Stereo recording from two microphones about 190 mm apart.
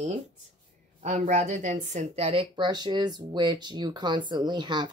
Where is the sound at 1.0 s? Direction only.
40° right (ahead or behind).